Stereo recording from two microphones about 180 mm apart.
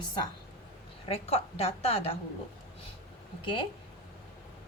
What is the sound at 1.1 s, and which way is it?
A woman's voice, 35° left (ahead or behind).